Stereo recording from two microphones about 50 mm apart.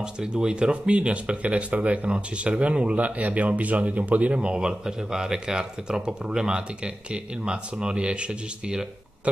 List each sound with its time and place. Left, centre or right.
0.0 s speech: centre